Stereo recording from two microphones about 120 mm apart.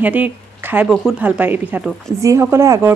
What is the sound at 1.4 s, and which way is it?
Speech, 15° right (ahead or behind).